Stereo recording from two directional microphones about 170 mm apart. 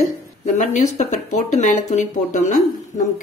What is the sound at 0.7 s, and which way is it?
Speech, 45° left (ahead or behind).